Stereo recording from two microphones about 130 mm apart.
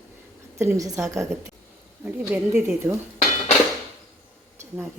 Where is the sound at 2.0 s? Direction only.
10° right (ahead or behind).